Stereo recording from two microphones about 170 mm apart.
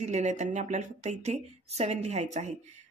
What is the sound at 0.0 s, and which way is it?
Speech, 40° right (ahead or behind).